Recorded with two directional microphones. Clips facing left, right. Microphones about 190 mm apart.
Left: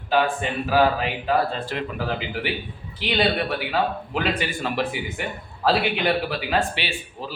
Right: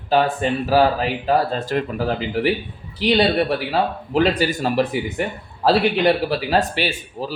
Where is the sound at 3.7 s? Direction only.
35° right (ahead or behind).